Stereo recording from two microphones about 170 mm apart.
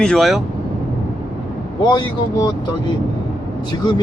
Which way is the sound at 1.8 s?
25° left (ahead or behind).